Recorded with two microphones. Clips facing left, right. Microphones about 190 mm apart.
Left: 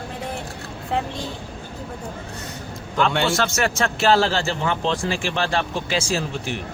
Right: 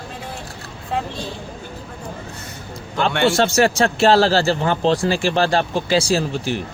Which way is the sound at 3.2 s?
30° right (ahead or behind).